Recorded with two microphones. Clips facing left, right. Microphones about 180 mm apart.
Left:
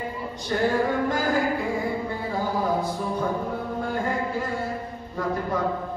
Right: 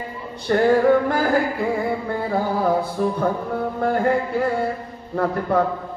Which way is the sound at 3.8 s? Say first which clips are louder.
Right 9 dB; 60° right (ahead or behind).